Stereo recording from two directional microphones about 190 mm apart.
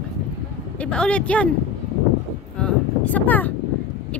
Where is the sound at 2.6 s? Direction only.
10° left (ahead or behind).